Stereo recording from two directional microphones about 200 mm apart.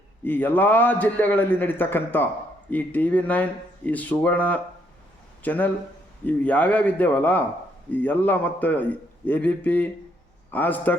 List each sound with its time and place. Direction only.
0.3 s a man's voice: 10° left (ahead or behind)